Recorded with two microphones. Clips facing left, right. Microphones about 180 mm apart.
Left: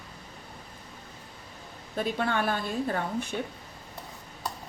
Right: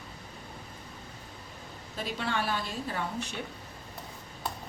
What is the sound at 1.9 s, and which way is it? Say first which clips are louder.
A woman's voice: left 5 dB; 50° left (ahead or behind).